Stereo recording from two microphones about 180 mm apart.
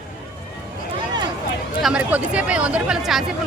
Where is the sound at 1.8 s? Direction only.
5° right (ahead or behind).